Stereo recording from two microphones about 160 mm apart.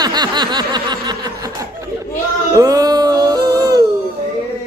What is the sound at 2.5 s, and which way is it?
Music, 20° right (ahead or behind).